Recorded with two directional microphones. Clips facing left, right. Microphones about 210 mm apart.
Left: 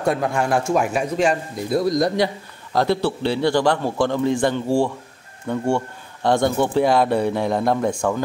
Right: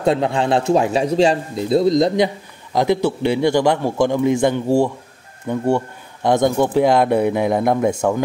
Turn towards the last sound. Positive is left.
turn(degrees=-15)  # may be behind; listen again after turning